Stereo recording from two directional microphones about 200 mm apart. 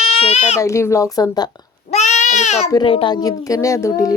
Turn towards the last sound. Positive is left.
turn(degrees=15)  # may be behind; listen again after turning